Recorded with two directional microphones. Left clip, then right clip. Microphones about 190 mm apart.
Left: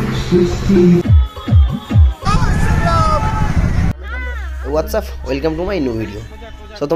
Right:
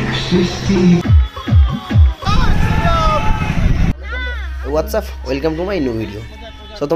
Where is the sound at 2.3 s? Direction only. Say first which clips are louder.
Left 1 dB; 5° left (ahead or behind).